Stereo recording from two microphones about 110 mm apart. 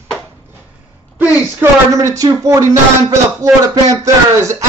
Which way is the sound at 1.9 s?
30° right (ahead or behind).